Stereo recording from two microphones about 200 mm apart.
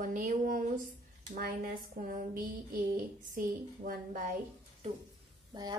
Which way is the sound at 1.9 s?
45° right (ahead or behind).